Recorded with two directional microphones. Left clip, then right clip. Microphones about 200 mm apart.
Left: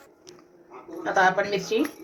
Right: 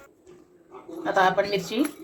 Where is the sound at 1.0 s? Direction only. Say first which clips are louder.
Even; 40° right (ahead or behind).